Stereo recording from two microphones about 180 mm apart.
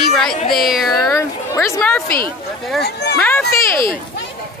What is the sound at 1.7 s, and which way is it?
Speech, 15° left (ahead or behind).